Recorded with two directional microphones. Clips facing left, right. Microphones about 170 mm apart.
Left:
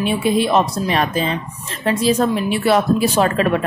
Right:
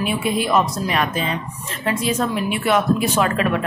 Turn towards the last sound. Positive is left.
turn(degrees=35)  # may be behind; listen again after turning